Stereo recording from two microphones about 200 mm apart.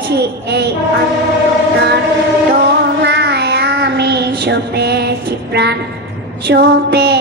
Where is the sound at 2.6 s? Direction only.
60° right (ahead or behind).